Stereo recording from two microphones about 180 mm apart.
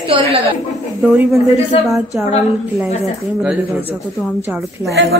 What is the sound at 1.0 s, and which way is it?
Speech, 5° right (ahead or behind).